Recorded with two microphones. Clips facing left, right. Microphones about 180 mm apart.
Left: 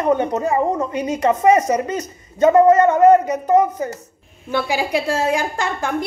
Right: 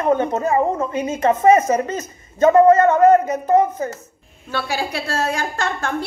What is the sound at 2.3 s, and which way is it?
A woman's voice, 20° left (ahead or behind).